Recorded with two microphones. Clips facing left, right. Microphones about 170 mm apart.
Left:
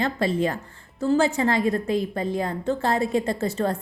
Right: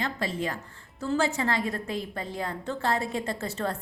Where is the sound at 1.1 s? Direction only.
20° left (ahead or behind).